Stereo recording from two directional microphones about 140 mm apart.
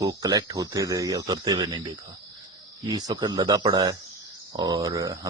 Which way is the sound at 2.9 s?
30° right (ahead or behind).